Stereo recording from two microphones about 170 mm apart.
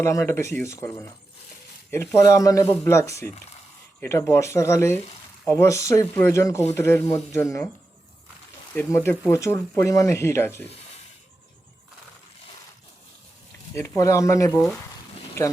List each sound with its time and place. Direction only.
0.0 s speech: 15° left (ahead or behind)
8.7 s speech: 10° left (ahead or behind)
13.7 s speech: 20° left (ahead or behind)